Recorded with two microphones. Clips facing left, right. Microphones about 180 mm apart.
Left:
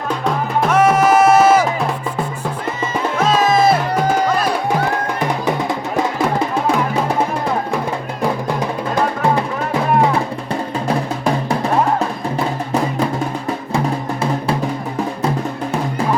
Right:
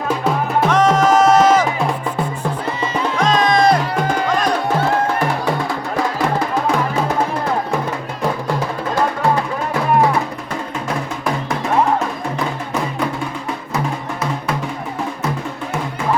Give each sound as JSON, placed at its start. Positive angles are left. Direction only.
{"t": 0.7, "sound": "music", "side_deg": 10}
{"t": 3.2, "sound": "music", "side_deg": 5}
{"t": 13.7, "sound": "music", "side_deg": 30}